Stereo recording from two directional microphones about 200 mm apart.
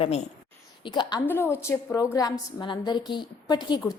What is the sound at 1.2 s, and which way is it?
A woman's voice, 10° left (ahead or behind).